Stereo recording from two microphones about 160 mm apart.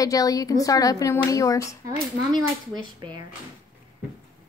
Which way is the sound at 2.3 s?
30° right (ahead or behind).